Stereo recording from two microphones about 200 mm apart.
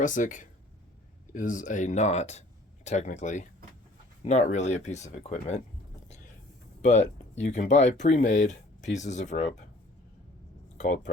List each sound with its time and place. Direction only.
0.0 s speech: 40° left (ahead or behind)
6.8 s speech: 35° left (ahead or behind)
10.8 s speech: 35° left (ahead or behind)